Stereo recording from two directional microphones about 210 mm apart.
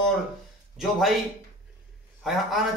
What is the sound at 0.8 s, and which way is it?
Speech, centre (ahead or behind).